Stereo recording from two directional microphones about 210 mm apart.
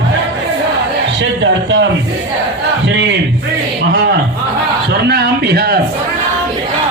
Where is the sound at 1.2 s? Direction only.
60° right (ahead or behind).